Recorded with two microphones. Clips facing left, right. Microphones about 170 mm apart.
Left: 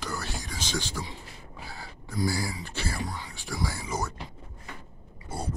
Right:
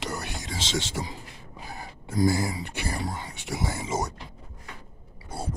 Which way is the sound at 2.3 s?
20° right (ahead or behind).